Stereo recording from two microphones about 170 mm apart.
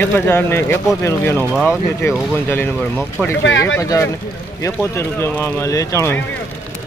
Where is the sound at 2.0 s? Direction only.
15° left (ahead or behind).